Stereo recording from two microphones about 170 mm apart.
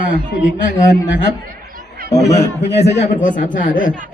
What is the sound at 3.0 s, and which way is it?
Speech, 50° left (ahead or behind).